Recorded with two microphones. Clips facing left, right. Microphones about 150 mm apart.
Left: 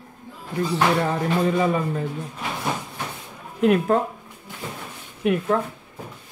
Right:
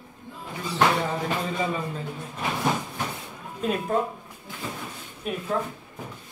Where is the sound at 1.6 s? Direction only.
60° left (ahead or behind).